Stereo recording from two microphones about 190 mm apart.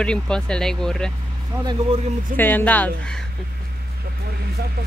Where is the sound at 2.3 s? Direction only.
10° left (ahead or behind).